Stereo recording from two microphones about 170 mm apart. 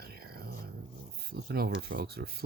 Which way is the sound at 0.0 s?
65° right (ahead or behind).